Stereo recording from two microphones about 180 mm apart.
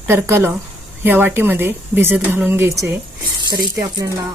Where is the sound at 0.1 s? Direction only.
15° right (ahead or behind).